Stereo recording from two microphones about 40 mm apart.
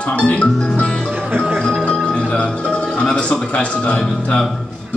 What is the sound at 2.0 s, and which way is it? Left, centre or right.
Music, left.